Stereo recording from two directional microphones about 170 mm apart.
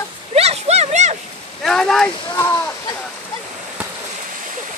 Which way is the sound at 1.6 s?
5° left (ahead or behind).